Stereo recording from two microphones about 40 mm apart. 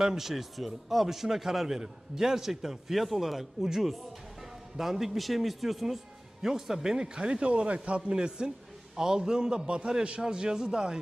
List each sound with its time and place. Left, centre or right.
0.0 s a man's voice: centre